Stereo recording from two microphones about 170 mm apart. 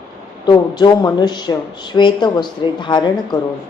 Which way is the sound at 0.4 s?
25° left (ahead or behind).